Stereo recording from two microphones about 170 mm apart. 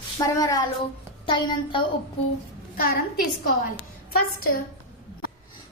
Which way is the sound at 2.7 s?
60° left (ahead or behind).